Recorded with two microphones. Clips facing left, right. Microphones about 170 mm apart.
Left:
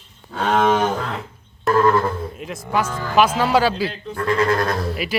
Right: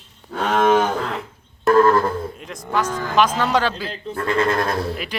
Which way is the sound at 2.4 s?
5° left (ahead or behind).